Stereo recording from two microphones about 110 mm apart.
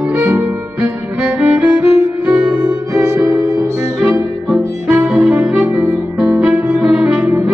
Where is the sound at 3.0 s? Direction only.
15° right (ahead or behind).